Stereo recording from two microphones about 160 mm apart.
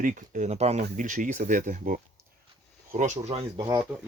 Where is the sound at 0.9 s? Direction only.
55° right (ahead or behind).